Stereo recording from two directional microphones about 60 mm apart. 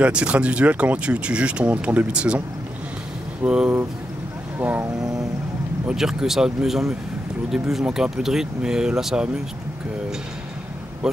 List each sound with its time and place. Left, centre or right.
0.0 s speech: centre
3.4 s speech: centre
4.6 s speech: right
5.9 s speech: centre